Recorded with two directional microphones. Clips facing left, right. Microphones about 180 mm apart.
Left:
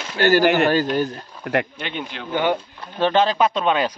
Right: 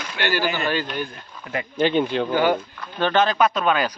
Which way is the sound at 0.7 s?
40° left (ahead or behind).